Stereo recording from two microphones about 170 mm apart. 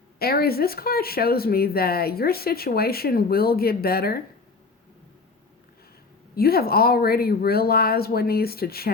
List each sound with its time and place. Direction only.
0.2 s speech: 65° left (ahead or behind)
6.3 s speech: 65° left (ahead or behind)